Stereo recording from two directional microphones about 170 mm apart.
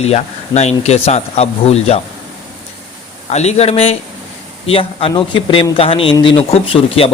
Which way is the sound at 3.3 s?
40° left (ahead or behind).